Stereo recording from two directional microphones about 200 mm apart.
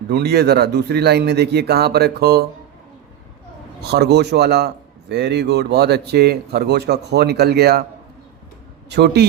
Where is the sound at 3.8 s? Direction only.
55° right (ahead or behind).